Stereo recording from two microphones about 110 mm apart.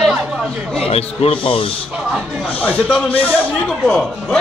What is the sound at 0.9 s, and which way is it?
Speech, 65° left (ahead or behind).